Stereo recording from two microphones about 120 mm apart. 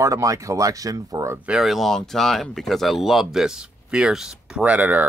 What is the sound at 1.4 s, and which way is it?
Speech, 5° right (ahead or behind).